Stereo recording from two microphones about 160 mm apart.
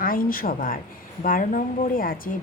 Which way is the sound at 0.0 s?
60° left (ahead or behind).